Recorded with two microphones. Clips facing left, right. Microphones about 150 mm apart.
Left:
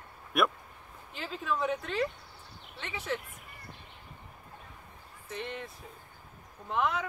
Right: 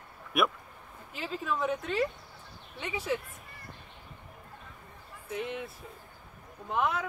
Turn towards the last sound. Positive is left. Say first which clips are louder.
# right 1 dB
turn(degrees=-5)  # may be behind; listen again after turning